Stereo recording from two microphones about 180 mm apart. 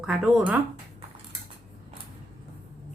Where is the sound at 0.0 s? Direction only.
5° right (ahead or behind).